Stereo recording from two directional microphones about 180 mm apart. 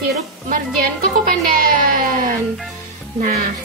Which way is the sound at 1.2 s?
50° right (ahead or behind).